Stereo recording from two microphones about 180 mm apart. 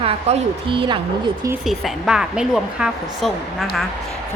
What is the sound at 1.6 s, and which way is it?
A woman's voice, centre (ahead or behind).